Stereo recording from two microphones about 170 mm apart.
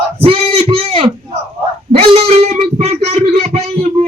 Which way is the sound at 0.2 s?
35° right (ahead or behind).